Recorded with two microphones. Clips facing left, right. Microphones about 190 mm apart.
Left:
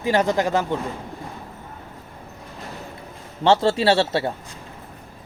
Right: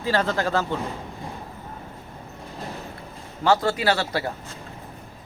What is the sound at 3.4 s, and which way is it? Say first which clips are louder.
Speech: left 4 dB; 30° left (ahead or behind).